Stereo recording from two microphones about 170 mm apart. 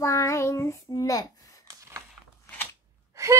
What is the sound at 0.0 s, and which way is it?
Child singing, 15° left (ahead or behind).